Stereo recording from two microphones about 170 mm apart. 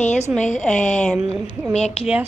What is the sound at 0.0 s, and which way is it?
A woman's voice, 45° left (ahead or behind).